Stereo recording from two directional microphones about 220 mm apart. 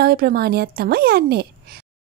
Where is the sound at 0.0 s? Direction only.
45° right (ahead or behind).